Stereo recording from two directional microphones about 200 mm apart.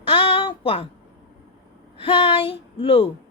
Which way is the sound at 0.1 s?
30° left (ahead or behind).